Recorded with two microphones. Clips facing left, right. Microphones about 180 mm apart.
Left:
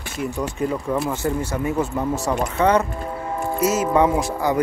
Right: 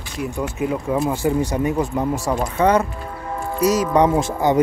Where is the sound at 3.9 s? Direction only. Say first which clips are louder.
Right 1 dB; 20° right (ahead or behind).